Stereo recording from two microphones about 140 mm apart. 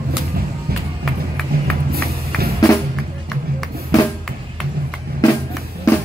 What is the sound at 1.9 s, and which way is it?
Music, 90° right.